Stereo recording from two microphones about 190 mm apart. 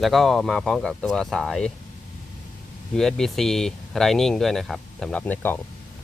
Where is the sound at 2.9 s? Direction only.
Centre (ahead or behind).